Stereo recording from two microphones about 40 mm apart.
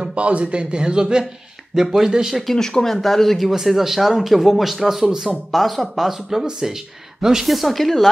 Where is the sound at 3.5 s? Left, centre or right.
Centre.